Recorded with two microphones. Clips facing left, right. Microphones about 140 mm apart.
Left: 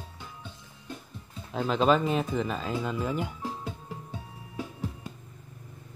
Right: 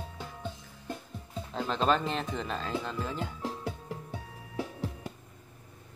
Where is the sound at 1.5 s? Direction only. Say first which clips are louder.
Left 4 dB; 5° left (ahead or behind).